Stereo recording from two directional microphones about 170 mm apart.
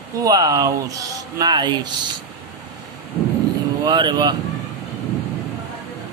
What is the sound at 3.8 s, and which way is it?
Speech, 25° right (ahead or behind).